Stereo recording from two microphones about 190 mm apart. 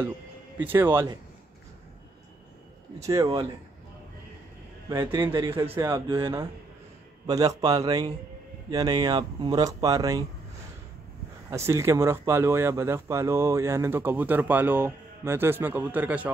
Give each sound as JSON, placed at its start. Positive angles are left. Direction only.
{"t": 0.6, "sound": "speech", "side_deg": -10}
{"t": 3.0, "sound": "speech", "side_deg": -15}
{"t": 4.8, "sound": "speech", "side_deg": -20}
{"t": 11.5, "sound": "speech", "side_deg": -15}